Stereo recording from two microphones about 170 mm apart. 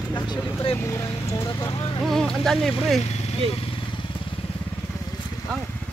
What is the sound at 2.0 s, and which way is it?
Speech, centre (ahead or behind).